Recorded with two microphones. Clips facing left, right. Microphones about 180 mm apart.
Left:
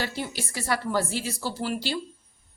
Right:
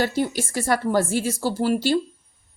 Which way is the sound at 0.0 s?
45° right (ahead or behind).